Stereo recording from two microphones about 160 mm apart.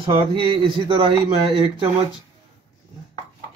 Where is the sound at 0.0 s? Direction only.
35° right (ahead or behind).